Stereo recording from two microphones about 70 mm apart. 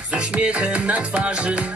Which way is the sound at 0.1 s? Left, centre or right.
Centre.